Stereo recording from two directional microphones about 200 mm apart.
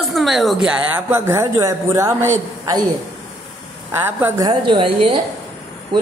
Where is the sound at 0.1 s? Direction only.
Centre (ahead or behind).